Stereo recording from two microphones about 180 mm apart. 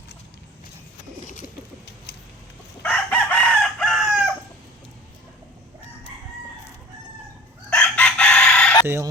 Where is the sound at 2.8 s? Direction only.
10° left (ahead or behind).